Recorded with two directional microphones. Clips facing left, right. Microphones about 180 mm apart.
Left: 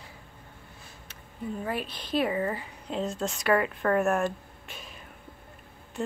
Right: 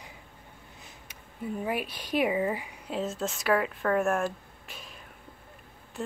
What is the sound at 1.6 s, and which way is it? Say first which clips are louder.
Speech: right 2 dB; 10° right (ahead or behind).